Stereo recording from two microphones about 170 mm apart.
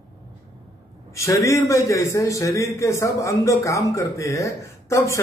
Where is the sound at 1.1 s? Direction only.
20° left (ahead or behind).